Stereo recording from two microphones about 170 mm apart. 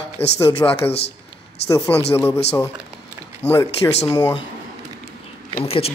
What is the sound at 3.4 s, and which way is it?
Speech, 15° left (ahead or behind).